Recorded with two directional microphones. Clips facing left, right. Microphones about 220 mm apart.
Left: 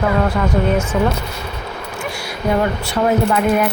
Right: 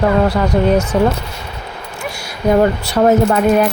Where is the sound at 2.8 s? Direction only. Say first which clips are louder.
Right 4 dB; 40° right (ahead or behind).